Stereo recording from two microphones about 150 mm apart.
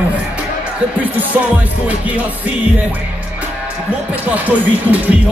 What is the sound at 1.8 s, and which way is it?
Music, 10° right (ahead or behind).